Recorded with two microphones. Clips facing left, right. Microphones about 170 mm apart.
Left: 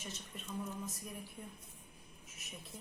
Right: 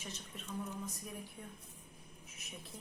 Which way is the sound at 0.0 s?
Centre (ahead or behind).